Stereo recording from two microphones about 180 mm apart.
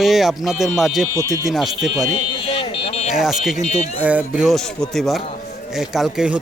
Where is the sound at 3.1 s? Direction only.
Centre (ahead or behind).